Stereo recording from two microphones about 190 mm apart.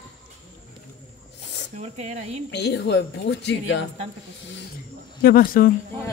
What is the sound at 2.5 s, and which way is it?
Speech, 65° left (ahead or behind).